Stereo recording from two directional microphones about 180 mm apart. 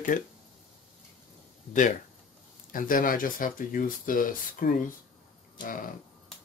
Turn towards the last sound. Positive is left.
turn(degrees=50)  # may be behind; listen again after turning